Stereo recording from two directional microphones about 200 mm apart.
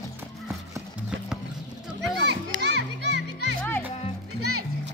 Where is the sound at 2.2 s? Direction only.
60° right (ahead or behind).